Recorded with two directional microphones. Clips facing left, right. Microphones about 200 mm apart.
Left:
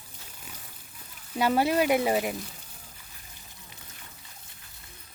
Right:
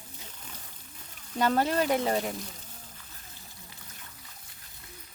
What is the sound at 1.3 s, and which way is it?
Speech, 10° left (ahead or behind).